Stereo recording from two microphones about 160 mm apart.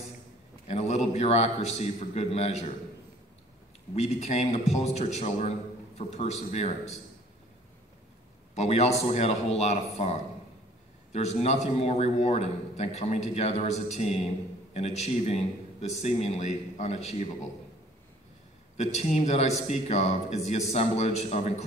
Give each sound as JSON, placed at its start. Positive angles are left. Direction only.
{"t": 0.7, "sound": "a man's voice", "side_deg": 45}
{"t": 3.9, "sound": "a man's voice", "side_deg": 45}
{"t": 8.5, "sound": "a man's voice", "side_deg": 45}
{"t": 18.8, "sound": "a man's voice", "side_deg": 45}